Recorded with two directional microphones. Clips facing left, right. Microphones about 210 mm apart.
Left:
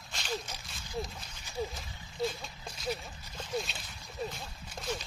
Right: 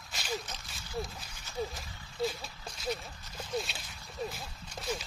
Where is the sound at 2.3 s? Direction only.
5° left (ahead or behind).